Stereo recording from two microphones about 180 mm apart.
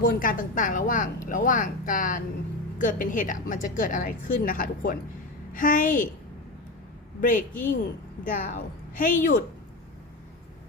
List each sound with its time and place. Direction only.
0.0 s a woman's voice: 50° left (ahead or behind)
7.2 s a woman's voice: 50° left (ahead or behind)